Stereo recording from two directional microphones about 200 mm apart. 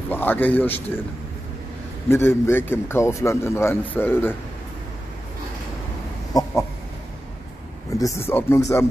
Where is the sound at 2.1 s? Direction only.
10° left (ahead or behind).